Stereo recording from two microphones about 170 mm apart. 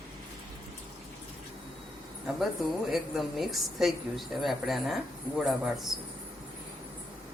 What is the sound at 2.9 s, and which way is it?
A woman's voice, centre (ahead or behind).